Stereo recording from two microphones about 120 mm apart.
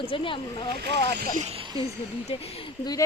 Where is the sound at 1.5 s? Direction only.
50° right (ahead or behind).